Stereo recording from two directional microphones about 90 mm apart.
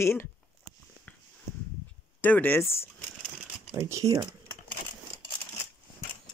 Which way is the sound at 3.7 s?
35° right (ahead or behind).